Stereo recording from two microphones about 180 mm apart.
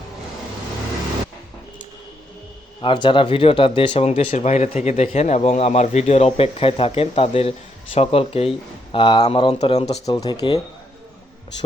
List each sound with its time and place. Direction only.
2.8 s speech: 25° left (ahead or behind)
10.1 s speech: 20° left (ahead or behind)